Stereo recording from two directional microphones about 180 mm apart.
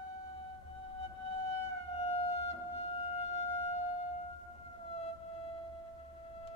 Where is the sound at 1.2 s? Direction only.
30° left (ahead or behind).